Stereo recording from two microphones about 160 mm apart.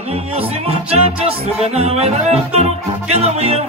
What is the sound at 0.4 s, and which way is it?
Music, 40° right (ahead or behind).